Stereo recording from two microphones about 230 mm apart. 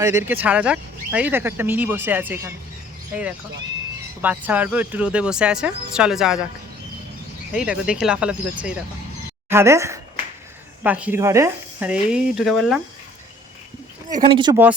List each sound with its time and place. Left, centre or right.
0.0 s speech: centre
7.5 s speech: centre
9.5 s speech: centre
14.2 s speech: right